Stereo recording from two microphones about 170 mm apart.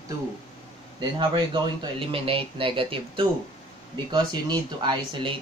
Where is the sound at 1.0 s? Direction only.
30° right (ahead or behind).